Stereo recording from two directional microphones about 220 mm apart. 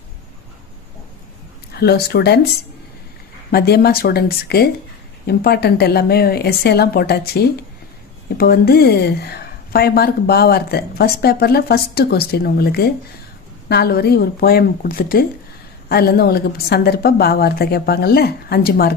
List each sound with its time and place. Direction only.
1.7 s speech: 45° left (ahead or behind)
3.5 s speech: 45° left (ahead or behind)